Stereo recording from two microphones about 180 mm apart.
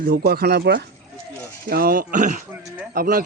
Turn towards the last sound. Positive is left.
turn(degrees=-50)  # may be behind; listen again after turning